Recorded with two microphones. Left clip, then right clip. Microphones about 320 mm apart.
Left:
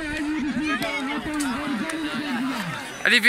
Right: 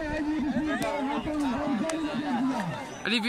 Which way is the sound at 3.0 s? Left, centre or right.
Centre.